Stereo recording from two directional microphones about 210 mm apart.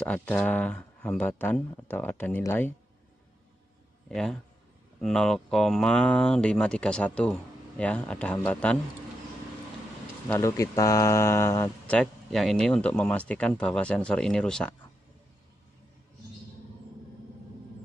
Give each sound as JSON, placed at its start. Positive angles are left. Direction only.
{"t": 0.0, "sound": "speech", "side_deg": 5}
{"t": 4.1, "sound": "speech", "side_deg": 5}
{"t": 10.2, "sound": "speech", "side_deg": 15}
{"t": 12.0, "sound": "speech", "side_deg": 0}